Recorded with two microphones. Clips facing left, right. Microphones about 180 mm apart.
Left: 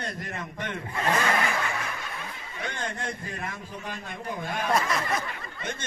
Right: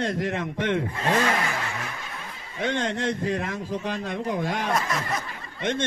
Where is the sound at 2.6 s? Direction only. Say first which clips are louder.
Right 8 dB; 90° right.